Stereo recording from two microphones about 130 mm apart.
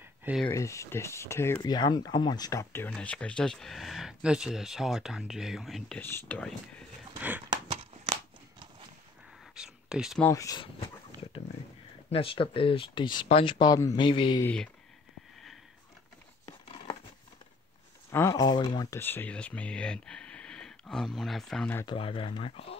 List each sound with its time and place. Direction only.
0.5 s speech: 25° left (ahead or behind)
1.6 s speech: 30° left (ahead or behind)
2.9 s speech: 10° left (ahead or behind)
5.9 s speech: 15° left (ahead or behind)
7.2 s a sound: 15° right (ahead or behind)
7.4 s a sound: 35° right (ahead or behind)
9.6 s a sound: 5° right (ahead or behind)
10.3 s speech: 25° left (ahead or behind)
12.1 s speech: 45° left (ahead or behind)
18.1 s speech: 20° left (ahead or behind)
18.4 s speech: 35° left (ahead or behind)
18.9 s speech: 15° left (ahead or behind)
21.8 s speech: 45° left (ahead or behind)